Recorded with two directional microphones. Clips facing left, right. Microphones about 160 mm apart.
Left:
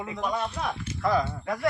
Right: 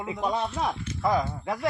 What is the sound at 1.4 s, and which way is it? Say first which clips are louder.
Speech: left 1 dB; 20° right (ahead or behind).